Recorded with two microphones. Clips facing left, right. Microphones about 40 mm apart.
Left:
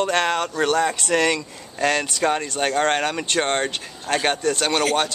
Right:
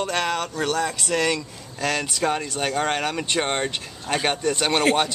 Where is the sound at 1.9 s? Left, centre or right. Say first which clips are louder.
Even; centre.